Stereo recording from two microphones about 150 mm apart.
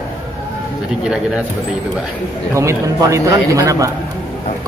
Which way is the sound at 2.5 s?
20° right (ahead or behind).